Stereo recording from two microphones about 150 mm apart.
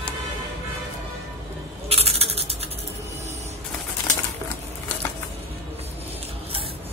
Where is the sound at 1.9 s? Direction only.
45° right (ahead or behind).